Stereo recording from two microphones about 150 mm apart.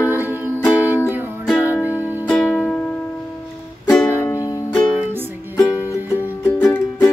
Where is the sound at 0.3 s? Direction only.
15° left (ahead or behind).